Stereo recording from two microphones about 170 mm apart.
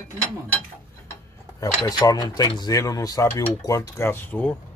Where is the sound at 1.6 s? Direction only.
20° left (ahead or behind).